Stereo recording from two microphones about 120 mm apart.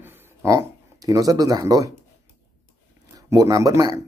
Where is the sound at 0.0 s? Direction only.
25° right (ahead or behind).